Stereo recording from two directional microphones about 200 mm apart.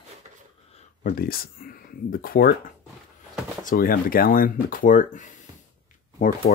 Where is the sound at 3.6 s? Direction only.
45° left (ahead or behind).